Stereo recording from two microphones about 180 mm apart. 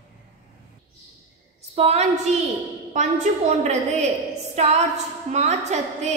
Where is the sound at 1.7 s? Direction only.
35° right (ahead or behind).